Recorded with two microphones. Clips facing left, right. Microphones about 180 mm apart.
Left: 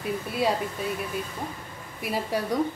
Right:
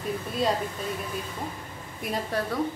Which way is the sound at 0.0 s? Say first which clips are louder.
Left 1 dB; 10° left (ahead or behind).